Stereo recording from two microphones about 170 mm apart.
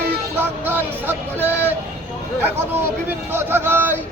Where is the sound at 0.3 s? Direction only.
15° right (ahead or behind).